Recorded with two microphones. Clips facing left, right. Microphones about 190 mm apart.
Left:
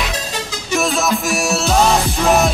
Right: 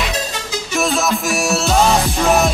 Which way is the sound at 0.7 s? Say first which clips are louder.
Left 1 dB; centre (ahead or behind).